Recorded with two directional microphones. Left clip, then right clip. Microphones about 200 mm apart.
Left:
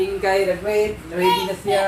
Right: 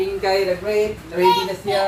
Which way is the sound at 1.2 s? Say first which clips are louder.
Right 2 dB; 10° right (ahead or behind).